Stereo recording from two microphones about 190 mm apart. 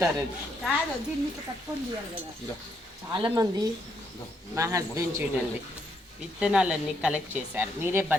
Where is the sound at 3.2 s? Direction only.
20° right (ahead or behind).